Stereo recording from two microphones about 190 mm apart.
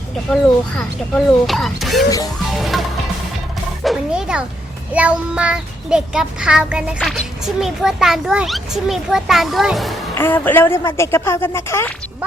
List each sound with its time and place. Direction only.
0.8 s a child's voice: 5° left (ahead or behind)
2.0 s speech: 20° left (ahead or behind)
2.6 s a child's voice: centre (ahead or behind)
3.8 s music: 5° right (ahead or behind)
4.9 s a child's voice: 5° right (ahead or behind)
10.2 s speech: 10° left (ahead or behind)